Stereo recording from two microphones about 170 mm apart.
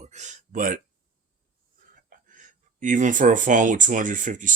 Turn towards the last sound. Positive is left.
turn(degrees=-50)  # may be behind; listen again after turning